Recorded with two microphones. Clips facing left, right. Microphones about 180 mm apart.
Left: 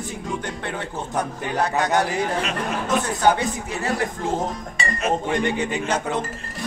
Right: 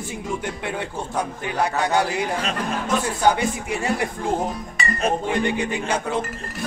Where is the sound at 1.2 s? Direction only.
10° right (ahead or behind).